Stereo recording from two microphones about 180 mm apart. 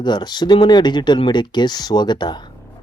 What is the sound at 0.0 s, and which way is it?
A man's voice, 25° left (ahead or behind).